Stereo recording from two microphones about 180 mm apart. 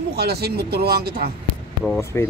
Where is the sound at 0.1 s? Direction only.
60° right (ahead or behind).